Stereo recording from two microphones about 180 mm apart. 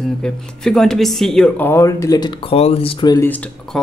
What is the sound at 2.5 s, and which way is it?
Speech, 35° left (ahead or behind).